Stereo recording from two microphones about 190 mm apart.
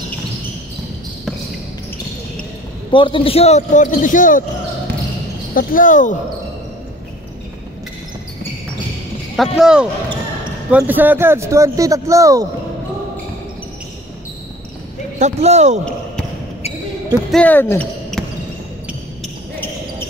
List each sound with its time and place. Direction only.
2.9 s speech: 25° left (ahead or behind); by 4.5 s 45° left (ahead or behind)
5.5 s speech: 45° left (ahead or behind)
9.4 s speech: 5° right (ahead or behind)
15.1 s speech: 35° right (ahead or behind)
17.3 s speech: 5° left (ahead or behind)